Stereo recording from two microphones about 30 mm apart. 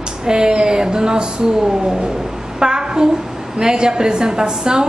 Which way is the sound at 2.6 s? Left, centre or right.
Right.